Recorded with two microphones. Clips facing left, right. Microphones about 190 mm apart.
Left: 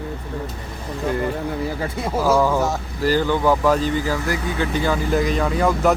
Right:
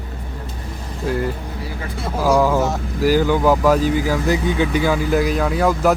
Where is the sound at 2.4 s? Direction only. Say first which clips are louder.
Right 2 dB; centre (ahead or behind).